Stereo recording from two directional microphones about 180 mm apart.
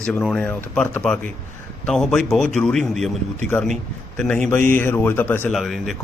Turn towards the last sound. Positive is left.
turn(degrees=0)  # may be behind; listen again after turning